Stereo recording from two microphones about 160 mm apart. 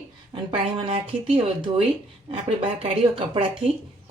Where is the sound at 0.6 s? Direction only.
35° right (ahead or behind).